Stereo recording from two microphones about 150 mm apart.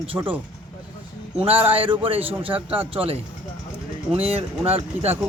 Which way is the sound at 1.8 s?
35° right (ahead or behind).